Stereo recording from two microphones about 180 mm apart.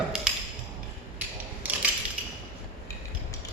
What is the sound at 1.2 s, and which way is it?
Mechanisms, 10° right (ahead or behind).